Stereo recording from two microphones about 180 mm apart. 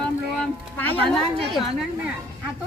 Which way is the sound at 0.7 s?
5° left (ahead or behind).